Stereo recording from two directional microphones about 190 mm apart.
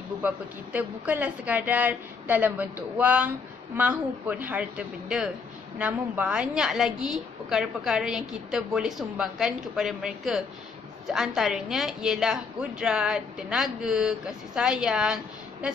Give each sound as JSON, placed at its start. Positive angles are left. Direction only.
{"t": 0.7, "sound": "a woman's voice", "side_deg": -10}